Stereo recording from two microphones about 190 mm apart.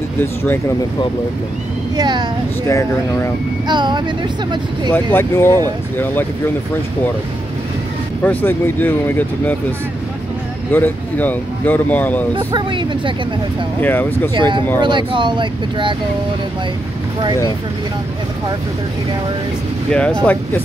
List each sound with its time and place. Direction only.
0.2 s speech: 15° left (ahead or behind)
2.0 s speech: 20° right (ahead or behind)
2.7 s speech: 15° left (ahead or behind)
3.6 s speech: 25° right (ahead or behind)
4.9 s speech: 10° left (ahead or behind)
8.2 s speech: 10° left (ahead or behind)
10.7 s speech: 10° left (ahead or behind)
12.4 s speech: 25° right (ahead or behind)
13.7 s speech: 10° left (ahead or behind)
14.3 s speech: 25° right (ahead or behind)
19.9 s speech: 5° left (ahead or behind)